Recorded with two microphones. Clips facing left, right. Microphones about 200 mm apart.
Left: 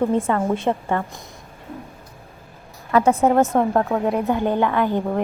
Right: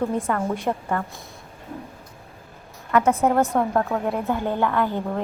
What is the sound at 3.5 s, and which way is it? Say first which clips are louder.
A woman's voice: left 3 dB; 15° left (ahead or behind).